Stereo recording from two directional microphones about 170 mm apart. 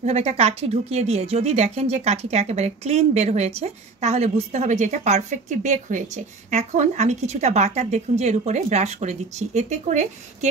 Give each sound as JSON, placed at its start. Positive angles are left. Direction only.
{"t": 0.0, "sound": "speech", "side_deg": -35}